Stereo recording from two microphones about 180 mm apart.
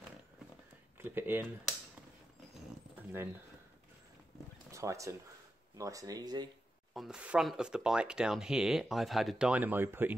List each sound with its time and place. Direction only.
0.9 s speech: 10° right (ahead or behind)
4.6 s horse: 15° right (ahead or behind)
5.8 s speech: 20° right (ahead or behind)
6.9 s speech: centre (ahead or behind)